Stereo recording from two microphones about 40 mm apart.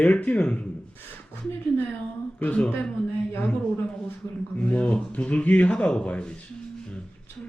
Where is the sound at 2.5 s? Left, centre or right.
Left.